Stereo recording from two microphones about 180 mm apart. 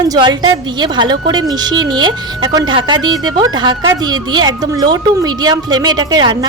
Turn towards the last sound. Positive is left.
turn(degrees=-25)  # may be behind; listen again after turning